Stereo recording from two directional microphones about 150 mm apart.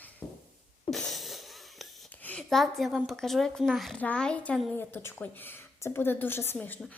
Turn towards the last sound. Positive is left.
turn(degrees=10)  # may be behind; listen again after turning